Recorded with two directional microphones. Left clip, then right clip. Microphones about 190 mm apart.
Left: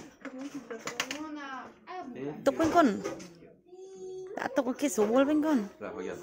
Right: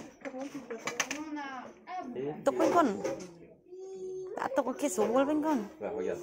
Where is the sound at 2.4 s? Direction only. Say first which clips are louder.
Left 2 dB; 35° left (ahead or behind).